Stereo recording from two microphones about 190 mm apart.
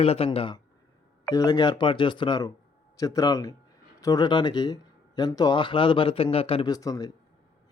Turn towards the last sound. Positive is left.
turn(degrees=20)  # may be behind; listen again after turning